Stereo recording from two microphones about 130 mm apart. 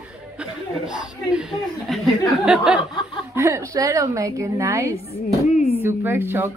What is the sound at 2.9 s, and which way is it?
Chuckle, 35° left (ahead or behind).